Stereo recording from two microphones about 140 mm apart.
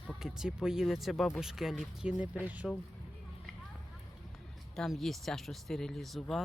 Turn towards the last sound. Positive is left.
turn(degrees=0)  # may be behind; listen again after turning